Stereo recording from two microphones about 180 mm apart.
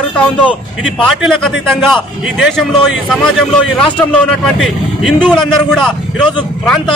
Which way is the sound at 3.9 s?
5° left (ahead or behind).